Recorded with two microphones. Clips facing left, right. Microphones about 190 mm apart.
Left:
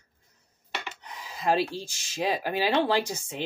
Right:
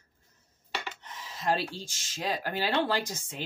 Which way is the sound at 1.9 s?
10° left (ahead or behind).